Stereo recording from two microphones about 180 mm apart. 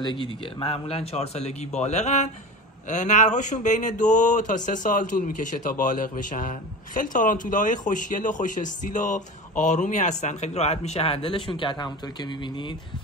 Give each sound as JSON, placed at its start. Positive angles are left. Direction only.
{"t": 0.0, "sound": "speech", "side_deg": 25}